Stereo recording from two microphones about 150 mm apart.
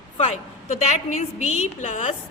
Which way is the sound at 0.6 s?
50° left (ahead or behind).